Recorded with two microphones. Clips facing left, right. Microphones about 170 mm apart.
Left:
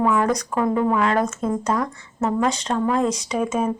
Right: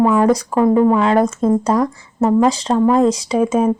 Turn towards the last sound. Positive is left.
turn(degrees=-30)  # may be behind; listen again after turning